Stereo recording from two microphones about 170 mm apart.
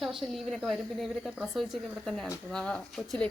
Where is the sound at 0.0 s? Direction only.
Centre (ahead or behind).